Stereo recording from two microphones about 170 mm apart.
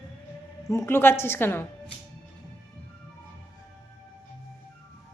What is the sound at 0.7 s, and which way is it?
Speech, 15° left (ahead or behind).